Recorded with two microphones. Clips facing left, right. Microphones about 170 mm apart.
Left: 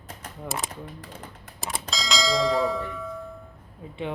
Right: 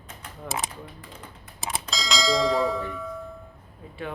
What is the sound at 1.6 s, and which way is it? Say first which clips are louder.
Bell: even; centre (ahead or behind).